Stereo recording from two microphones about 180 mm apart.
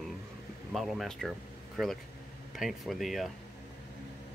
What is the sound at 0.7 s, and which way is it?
Speech, centre (ahead or behind).